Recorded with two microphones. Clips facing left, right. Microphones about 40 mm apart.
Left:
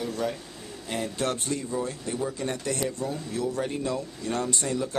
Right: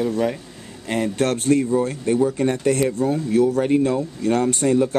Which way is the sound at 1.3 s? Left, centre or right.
Right.